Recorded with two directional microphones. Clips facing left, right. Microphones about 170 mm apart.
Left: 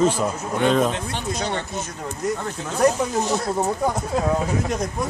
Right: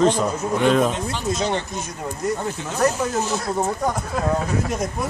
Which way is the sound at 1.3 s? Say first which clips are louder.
Right 4 dB; 25° right (ahead or behind).